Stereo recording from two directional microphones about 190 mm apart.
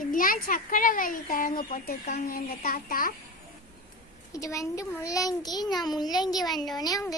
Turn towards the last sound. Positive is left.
turn(degrees=20)  # may be behind; listen again after turning